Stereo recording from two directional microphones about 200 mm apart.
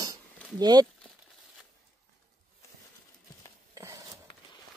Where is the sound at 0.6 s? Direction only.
20° right (ahead or behind).